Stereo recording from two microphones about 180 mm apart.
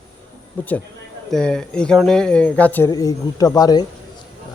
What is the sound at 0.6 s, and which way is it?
Speech, 10° left (ahead or behind).